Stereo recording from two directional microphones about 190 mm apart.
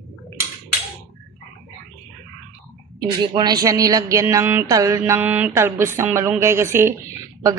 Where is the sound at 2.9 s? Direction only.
20° right (ahead or behind).